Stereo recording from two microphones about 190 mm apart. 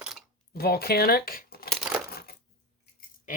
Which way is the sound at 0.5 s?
55° left (ahead or behind).